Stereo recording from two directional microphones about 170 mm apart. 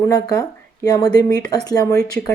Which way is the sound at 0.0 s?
20° left (ahead or behind).